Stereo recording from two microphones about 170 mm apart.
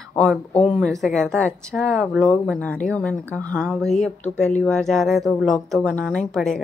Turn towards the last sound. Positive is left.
turn(degrees=5)  # may be behind; listen again after turning